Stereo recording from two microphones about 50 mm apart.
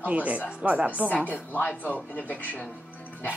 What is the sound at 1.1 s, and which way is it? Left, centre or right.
Speech, left.